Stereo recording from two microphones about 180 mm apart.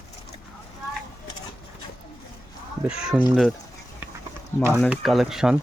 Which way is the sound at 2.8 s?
5° right (ahead or behind).